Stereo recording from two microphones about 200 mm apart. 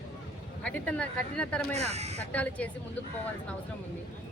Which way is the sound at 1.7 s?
30° right (ahead or behind).